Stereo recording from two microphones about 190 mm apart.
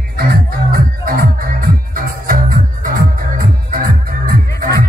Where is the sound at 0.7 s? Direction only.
50° right (ahead or behind).